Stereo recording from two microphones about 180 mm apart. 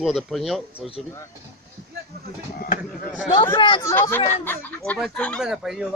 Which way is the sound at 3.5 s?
25° left (ahead or behind).